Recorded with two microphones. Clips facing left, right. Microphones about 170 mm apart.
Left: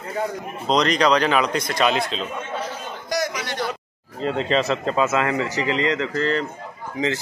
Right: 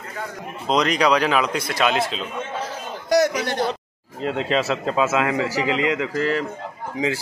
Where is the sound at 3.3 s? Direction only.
45° right (ahead or behind).